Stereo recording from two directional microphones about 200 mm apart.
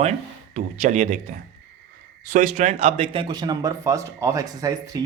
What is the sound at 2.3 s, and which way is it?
Speech, 35° right (ahead or behind).